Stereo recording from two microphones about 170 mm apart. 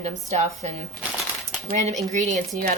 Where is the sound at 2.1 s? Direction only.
45° right (ahead or behind).